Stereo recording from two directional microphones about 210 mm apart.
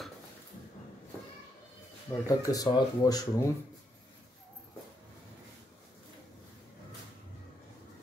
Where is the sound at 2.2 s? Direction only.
15° left (ahead or behind).